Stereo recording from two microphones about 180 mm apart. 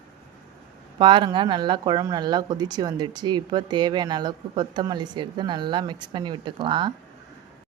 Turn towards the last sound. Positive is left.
turn(degrees=-25)  # may be behind; listen again after turning